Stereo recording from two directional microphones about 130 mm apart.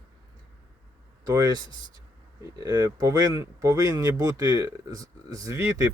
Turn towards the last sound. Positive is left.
turn(degrees=-25)  # may be behind; listen again after turning